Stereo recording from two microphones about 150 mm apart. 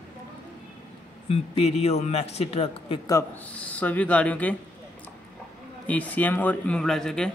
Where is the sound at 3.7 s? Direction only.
10° left (ahead or behind).